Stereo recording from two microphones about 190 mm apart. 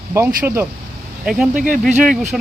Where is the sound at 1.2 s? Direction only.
5° right (ahead or behind).